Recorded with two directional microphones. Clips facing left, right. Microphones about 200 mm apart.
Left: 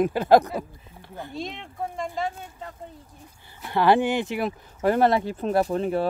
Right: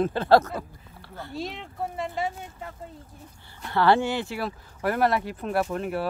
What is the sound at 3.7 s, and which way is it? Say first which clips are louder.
Speech: left 2 dB; 15° left (ahead or behind).